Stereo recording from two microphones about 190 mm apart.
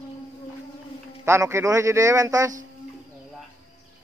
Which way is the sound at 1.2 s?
15° right (ahead or behind).